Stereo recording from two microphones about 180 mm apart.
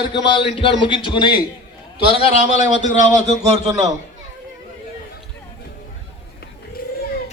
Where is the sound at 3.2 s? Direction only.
35° right (ahead or behind).